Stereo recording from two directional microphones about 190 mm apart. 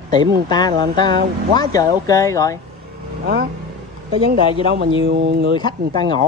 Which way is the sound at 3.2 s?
60° right (ahead or behind).